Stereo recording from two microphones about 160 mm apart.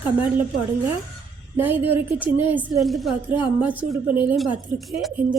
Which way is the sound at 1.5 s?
10° right (ahead or behind).